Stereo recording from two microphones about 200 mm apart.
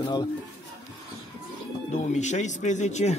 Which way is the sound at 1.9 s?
35° left (ahead or behind).